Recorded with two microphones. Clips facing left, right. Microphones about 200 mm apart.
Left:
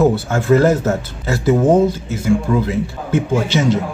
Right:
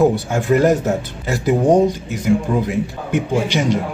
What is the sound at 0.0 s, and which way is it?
Speech, 15° right (ahead or behind).